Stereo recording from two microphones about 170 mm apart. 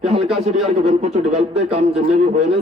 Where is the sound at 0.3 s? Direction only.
Centre (ahead or behind).